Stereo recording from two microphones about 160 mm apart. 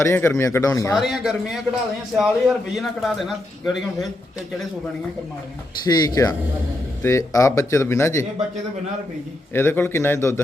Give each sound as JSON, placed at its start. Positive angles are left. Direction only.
{"t": 0.0, "sound": "speech", "side_deg": 15}
{"t": 0.9, "sound": "a man's voice", "side_deg": 0}
{"t": 5.8, "sound": "speech", "side_deg": 25}
{"t": 9.5, "sound": "speech", "side_deg": 15}